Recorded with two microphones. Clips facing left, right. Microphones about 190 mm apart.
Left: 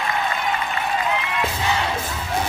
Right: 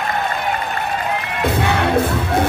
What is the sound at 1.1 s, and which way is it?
Music, 55° right (ahead or behind).